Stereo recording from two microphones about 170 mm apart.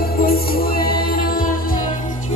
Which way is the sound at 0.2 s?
60° left (ahead or behind).